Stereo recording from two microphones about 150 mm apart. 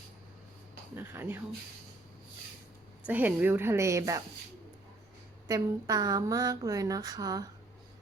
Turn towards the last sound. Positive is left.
turn(degrees=-25)  # may be behind; listen again after turning